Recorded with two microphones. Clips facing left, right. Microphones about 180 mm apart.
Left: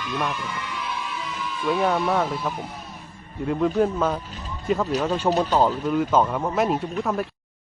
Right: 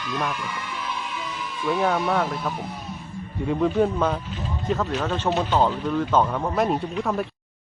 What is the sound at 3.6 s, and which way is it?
A man's voice, centre (ahead or behind).